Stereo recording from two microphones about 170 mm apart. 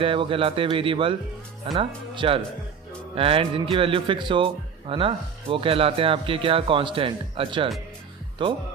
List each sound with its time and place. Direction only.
0.0 s a man's voice: 30° right (ahead or behind)